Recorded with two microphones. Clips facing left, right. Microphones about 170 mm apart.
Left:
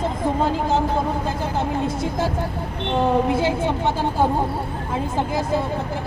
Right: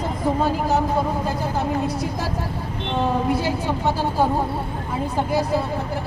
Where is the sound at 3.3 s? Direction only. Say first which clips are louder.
Left 2 dB; 25° left (ahead or behind).